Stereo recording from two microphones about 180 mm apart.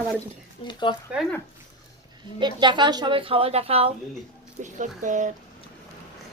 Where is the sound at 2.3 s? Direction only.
25° right (ahead or behind); by 5.3 s 45° right (ahead or behind).